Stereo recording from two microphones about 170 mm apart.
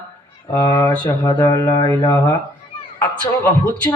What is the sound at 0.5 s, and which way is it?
Speech, 15° left (ahead or behind).